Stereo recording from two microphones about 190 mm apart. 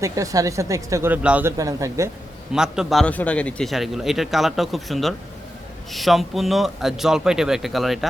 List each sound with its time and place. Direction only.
0.0 s speech: 15° right (ahead or behind)
2.5 s a man's voice: 5° right (ahead or behind)